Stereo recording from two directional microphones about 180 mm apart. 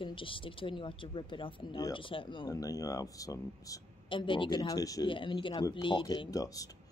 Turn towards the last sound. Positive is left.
turn(degrees=20)  # may be behind; listen again after turning